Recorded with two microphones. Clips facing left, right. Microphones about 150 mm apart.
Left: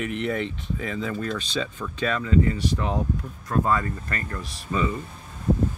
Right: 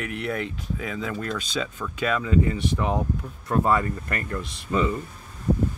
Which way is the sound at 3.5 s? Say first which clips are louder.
Right 2 dB; 20° right (ahead or behind).